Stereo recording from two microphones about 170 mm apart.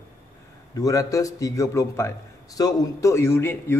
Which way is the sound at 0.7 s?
20° left (ahead or behind).